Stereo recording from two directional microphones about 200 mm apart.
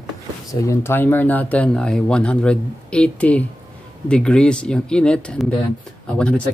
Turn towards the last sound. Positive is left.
turn(degrees=5)  # may be behind; listen again after turning